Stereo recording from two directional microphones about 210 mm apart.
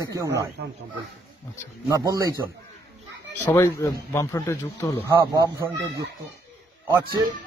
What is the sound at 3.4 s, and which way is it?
Speech, 15° left (ahead or behind).